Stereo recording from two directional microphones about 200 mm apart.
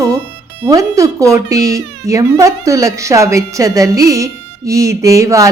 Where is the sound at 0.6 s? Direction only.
15° right (ahead or behind).